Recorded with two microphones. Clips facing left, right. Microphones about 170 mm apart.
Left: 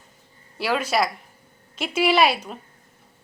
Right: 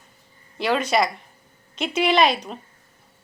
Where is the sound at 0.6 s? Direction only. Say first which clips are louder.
Right 2 dB; 5° left (ahead or behind).